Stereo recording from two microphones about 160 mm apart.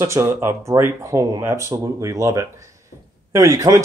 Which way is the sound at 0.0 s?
15° right (ahead or behind).